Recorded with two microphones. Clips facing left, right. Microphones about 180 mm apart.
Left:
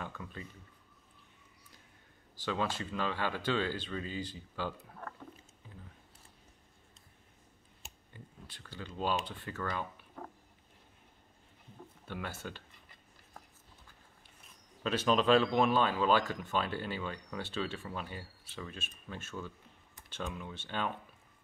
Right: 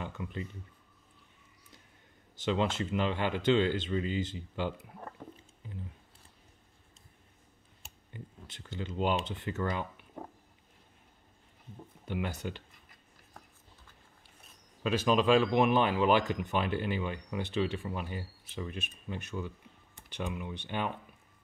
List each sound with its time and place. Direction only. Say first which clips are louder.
0.0 s speech: right 5 dB; 20° right (ahead or behind)
2.3 s speech: right 5 dB; 20° right (ahead or behind)
8.1 s speech: right 6 dB; 20° right (ahead or behind)
12.1 s speech: right 6 dB; 15° right (ahead or behind)
14.8 s speech: right 2 dB; 10° right (ahead or behind)